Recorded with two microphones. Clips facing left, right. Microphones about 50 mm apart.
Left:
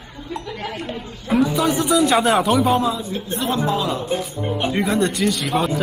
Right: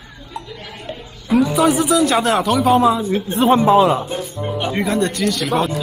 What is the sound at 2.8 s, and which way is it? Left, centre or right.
Speech, right.